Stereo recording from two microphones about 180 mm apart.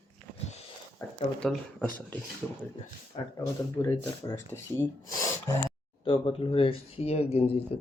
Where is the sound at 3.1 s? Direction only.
30° left (ahead or behind); by 5.6 s 15° left (ahead or behind).